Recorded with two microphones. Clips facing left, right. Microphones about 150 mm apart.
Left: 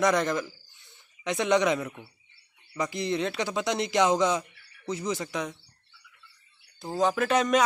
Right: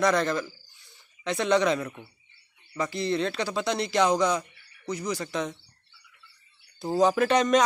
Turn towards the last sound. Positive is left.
turn(degrees=5)  # may be behind; listen again after turning